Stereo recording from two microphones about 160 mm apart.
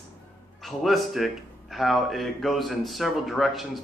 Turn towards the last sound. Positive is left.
turn(degrees=0)  # may be behind; listen again after turning